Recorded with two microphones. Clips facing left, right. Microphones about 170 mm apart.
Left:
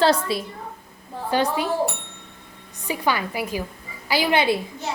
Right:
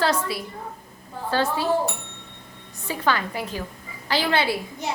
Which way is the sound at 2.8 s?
10° left (ahead or behind).